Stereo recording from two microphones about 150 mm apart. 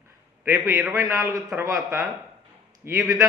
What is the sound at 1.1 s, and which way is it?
A man's voice, 20° right (ahead or behind).